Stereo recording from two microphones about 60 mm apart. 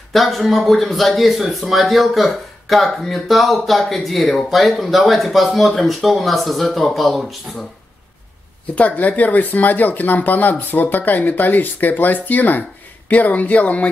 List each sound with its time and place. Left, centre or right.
0.1 s a man's voice: centre
8.7 s speech: left